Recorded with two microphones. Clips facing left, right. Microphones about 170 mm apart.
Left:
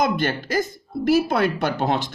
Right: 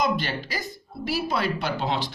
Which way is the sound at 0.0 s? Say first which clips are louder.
Left 4 dB; 50° left (ahead or behind).